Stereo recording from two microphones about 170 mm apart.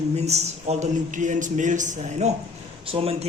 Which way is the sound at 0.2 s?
40° right (ahead or behind).